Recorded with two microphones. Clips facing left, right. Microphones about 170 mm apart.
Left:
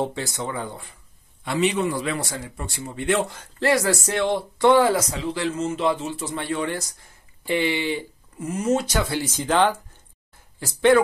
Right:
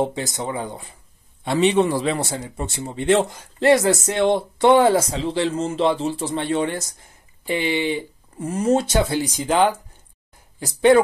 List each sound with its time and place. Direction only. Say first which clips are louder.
0.0 s speech: right 3 dB; 20° right (ahead or behind)
8.4 s speech: right 3 dB; 30° right (ahead or behind)